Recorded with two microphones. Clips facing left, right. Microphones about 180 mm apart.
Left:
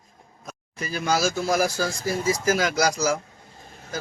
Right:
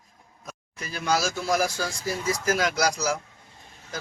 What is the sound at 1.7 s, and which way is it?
Speech, 50° left (ahead or behind).